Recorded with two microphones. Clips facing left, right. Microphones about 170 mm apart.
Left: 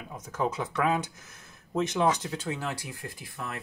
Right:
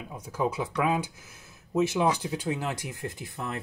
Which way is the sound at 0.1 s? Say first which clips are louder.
Right 1 dB; 10° right (ahead or behind).